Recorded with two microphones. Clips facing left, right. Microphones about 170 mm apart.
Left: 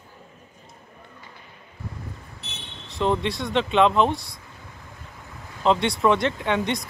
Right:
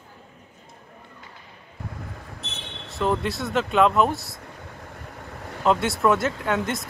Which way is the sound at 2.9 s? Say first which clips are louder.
Left 1 dB; centre (ahead or behind).